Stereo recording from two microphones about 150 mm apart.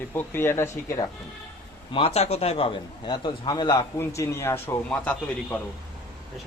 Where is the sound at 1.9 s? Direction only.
40° left (ahead or behind).